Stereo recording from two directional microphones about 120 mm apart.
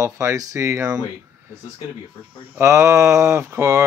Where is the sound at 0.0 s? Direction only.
25° right (ahead or behind).